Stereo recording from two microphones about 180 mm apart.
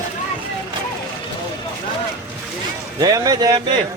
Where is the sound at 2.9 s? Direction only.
20° right (ahead or behind).